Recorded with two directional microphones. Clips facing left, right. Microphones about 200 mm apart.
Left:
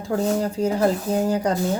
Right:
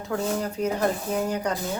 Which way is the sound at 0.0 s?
30° left (ahead or behind).